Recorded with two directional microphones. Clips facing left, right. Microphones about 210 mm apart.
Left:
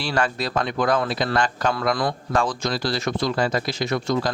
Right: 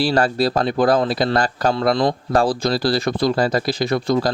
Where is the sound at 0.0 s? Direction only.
35° right (ahead or behind).